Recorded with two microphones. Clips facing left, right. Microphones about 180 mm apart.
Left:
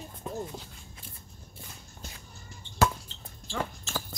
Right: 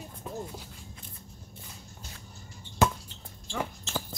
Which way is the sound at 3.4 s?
15° right (ahead or behind).